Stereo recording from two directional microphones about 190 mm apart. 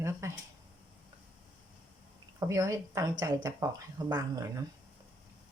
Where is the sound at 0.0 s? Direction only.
15° right (ahead or behind).